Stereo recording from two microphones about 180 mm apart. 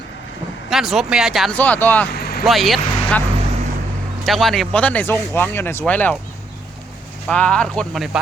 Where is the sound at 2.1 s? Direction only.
60° left (ahead or behind).